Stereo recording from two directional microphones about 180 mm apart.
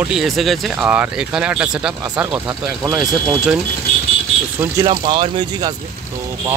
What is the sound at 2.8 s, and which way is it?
Speech, 20° right (ahead or behind).